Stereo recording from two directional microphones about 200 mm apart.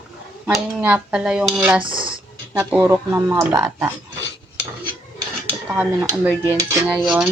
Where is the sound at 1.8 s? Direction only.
25° right (ahead or behind).